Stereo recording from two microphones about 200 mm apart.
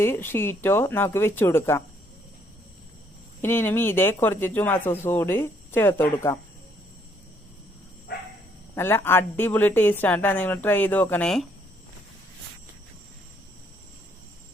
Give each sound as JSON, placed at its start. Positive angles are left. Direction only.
{"t": 0.0, "sound": "speech", "side_deg": 10}
{"t": 3.4, "sound": "speech", "side_deg": 10}
{"t": 8.1, "sound": "dog", "side_deg": 50}
{"t": 8.7, "sound": "speech", "side_deg": 10}